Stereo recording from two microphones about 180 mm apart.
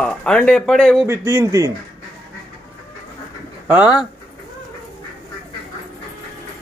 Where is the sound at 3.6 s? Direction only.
10° right (ahead or behind).